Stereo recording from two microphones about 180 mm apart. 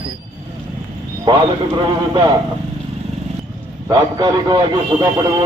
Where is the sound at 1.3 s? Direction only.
25° right (ahead or behind).